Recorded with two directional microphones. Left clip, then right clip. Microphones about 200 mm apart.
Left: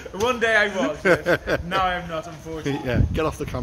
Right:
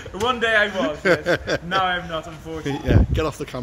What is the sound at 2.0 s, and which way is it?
Speech, 10° left (ahead or behind).